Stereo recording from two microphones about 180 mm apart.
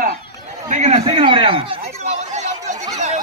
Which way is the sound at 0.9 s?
30° right (ahead or behind).